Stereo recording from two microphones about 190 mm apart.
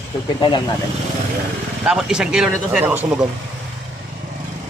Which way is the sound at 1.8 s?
5° right (ahead or behind).